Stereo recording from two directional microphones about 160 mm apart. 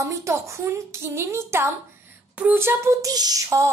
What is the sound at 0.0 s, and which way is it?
A woman's voice, 20° right (ahead or behind).